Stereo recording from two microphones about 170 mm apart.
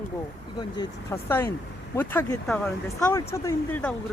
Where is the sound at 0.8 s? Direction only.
15° left (ahead or behind).